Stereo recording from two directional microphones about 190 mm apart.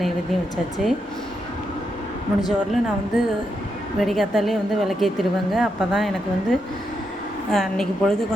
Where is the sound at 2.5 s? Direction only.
Centre (ahead or behind).